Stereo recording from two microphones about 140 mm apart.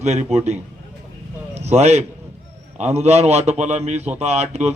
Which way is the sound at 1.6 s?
55° right (ahead or behind).